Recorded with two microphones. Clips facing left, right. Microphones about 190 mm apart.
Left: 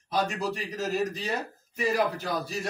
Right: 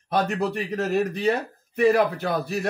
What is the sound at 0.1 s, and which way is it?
Speech, 60° right (ahead or behind).